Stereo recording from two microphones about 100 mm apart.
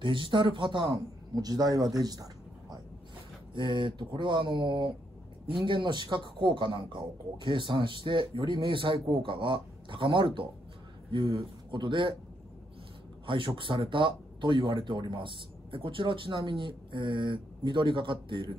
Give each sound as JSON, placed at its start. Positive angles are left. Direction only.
{"t": 0.0, "sound": "a man's voice", "side_deg": -55}
{"t": 0.8, "sound": "speech", "side_deg": -40}
{"t": 3.5, "sound": "a man's voice", "side_deg": -55}
{"t": 13.6, "sound": "a man's voice", "side_deg": -55}